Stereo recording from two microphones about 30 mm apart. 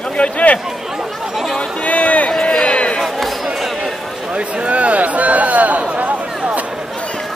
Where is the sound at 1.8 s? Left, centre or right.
Left.